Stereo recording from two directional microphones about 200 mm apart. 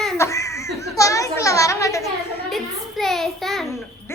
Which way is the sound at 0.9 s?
15° left (ahead or behind).